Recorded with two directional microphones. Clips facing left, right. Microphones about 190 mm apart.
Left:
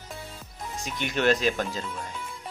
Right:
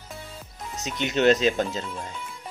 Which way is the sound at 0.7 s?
20° right (ahead or behind).